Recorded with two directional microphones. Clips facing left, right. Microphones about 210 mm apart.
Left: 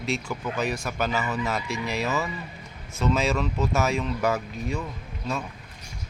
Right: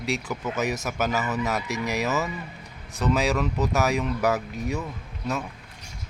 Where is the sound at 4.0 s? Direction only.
5° right (ahead or behind).